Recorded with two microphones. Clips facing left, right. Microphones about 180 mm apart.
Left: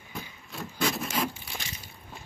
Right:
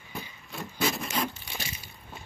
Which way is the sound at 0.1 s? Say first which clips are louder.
Right 1 dB; centre (ahead or behind).